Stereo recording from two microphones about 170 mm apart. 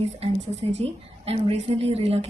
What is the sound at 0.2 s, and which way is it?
A woman's voice, 35° right (ahead or behind).